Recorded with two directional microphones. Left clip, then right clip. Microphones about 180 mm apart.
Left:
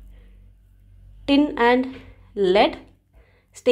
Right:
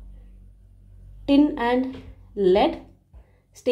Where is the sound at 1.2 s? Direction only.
30° left (ahead or behind).